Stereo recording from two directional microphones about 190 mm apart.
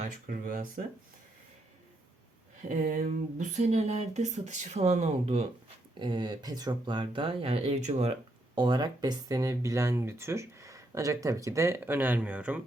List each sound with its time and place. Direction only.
0.0 s speech: 45° right (ahead or behind)
2.6 s speech: 45° right (ahead or behind)
8.5 s speech: 25° right (ahead or behind); by 12.6 s 5° right (ahead or behind)